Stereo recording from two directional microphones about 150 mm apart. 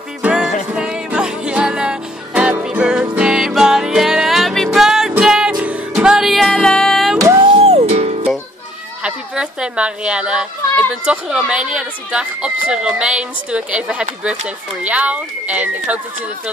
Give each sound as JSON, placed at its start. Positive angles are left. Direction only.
{"t": 0.2, "sound": "music", "side_deg": -5}
{"t": 7.2, "sound": "music", "side_deg": -20}
{"t": 7.4, "sound": "music", "side_deg": -40}
{"t": 9.0, "sound": "a child's voice", "side_deg": -5}